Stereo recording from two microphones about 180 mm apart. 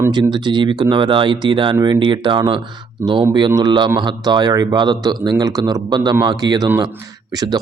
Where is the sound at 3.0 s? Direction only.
15° right (ahead or behind).